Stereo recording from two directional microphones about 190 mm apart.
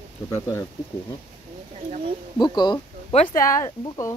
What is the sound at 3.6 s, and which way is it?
Speech, 15° left (ahead or behind).